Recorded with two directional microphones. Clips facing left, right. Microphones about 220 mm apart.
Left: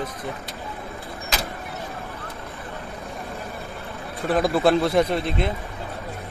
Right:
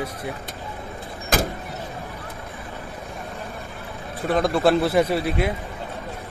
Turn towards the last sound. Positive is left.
turn(degrees=-10)  # may be behind; listen again after turning